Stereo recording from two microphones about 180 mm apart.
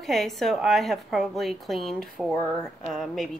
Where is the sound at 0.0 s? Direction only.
Centre (ahead or behind).